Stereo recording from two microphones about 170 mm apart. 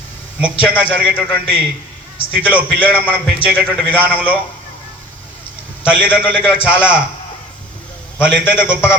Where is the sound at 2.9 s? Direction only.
10° right (ahead or behind).